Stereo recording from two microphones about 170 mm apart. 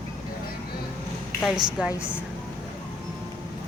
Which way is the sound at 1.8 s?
5° right (ahead or behind).